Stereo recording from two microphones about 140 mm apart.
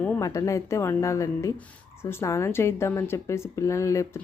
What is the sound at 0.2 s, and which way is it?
Speech, 20° left (ahead or behind).